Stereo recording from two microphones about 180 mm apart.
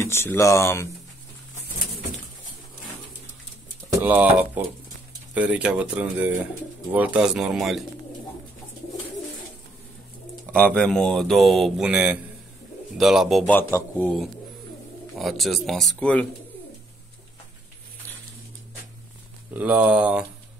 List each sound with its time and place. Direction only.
0.0 s speech: 15° left (ahead or behind)
3.9 s speech: 10° right (ahead or behind)
10.5 s speech: 5° left (ahead or behind)
13.5 s speech: 10° left (ahead or behind)
19.5 s speech: 10° right (ahead or behind)